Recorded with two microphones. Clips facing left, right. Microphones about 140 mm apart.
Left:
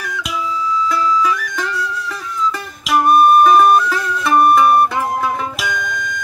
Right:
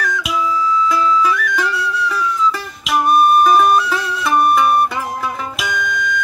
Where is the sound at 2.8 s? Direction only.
Centre (ahead or behind).